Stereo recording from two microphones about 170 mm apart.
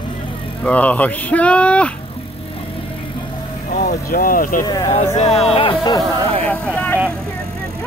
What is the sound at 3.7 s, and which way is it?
Speech, 60° left (ahead or behind).